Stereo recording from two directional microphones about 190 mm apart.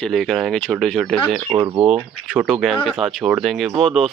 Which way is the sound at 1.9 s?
5° right (ahead or behind).